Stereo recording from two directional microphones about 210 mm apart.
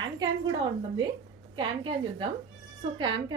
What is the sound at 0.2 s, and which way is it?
Speech, 20° right (ahead or behind).